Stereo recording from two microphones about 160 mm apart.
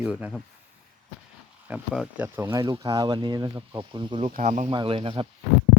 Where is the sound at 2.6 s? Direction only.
25° right (ahead or behind).